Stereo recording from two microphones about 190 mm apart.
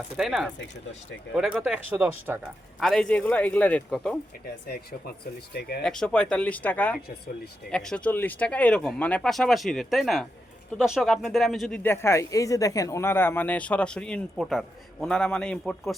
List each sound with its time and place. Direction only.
0.2 s speech: centre (ahead or behind)
2.8 s speech: 5° left (ahead or behind)
5.5 s speech: 60° left (ahead or behind)
5.8 s speech: 5° left (ahead or behind)